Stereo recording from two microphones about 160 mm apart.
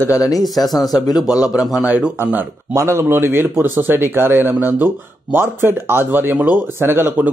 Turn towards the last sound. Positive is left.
turn(degrees=-10)  # may be behind; listen again after turning